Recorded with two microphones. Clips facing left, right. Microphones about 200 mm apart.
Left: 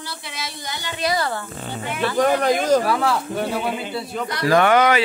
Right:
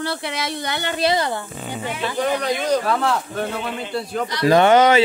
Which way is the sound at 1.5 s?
10° right (ahead or behind).